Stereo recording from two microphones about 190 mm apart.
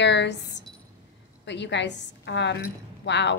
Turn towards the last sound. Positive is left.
turn(degrees=70)  # may be behind; listen again after turning